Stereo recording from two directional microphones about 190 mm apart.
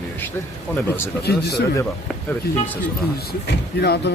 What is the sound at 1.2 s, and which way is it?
Speech, 55° left (ahead or behind).